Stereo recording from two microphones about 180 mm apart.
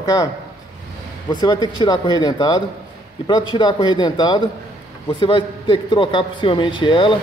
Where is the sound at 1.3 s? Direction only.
25° left (ahead or behind).